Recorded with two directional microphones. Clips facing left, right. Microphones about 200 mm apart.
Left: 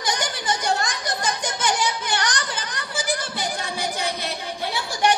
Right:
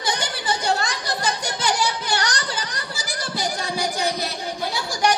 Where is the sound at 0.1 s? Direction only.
35° right (ahead or behind).